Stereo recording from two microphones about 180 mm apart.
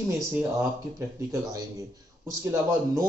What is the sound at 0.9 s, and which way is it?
Speech, 20° right (ahead or behind).